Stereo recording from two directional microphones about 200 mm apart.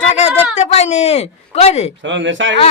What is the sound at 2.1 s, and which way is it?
Speech, 65° right (ahead or behind).